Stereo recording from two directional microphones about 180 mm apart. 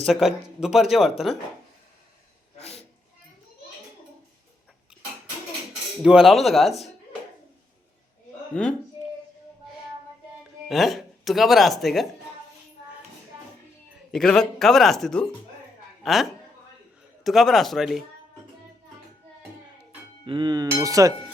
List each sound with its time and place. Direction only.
0.0 s speech: centre (ahead or behind)
2.6 s a sound: 35° left (ahead or behind)
6.0 s speech: 5° right (ahead or behind)
8.5 s speech: 5° left (ahead or behind)
10.7 s speech: centre (ahead or behind)
14.1 s speech: 5° left (ahead or behind)
17.2 s speech: centre (ahead or behind)
20.2 s speech: 25° right (ahead or behind)